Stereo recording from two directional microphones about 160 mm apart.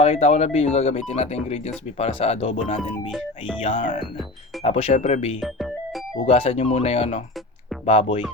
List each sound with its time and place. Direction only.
0.0 s speech: 45° left (ahead or behind)
3.1 s speech: 5° right (ahead or behind)
3.6 s speech: 35° left (ahead or behind)